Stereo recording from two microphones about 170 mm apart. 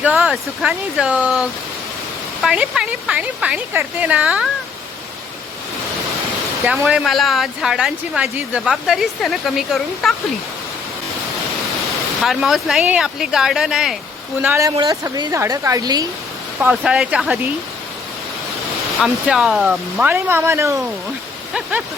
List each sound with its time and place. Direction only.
0.0 s a woman's voice: 5° right (ahead or behind)
6.8 s speech: centre (ahead or behind)
12.2 s speech: centre (ahead or behind)
14.4 s a woman's voice: 15° right (ahead or behind)
16.6 s a woman's voice: 10° right (ahead or behind)
19.0 s a woman's voice: centre (ahead or behind)